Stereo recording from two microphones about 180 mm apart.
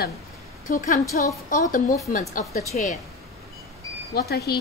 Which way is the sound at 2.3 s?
50° left (ahead or behind).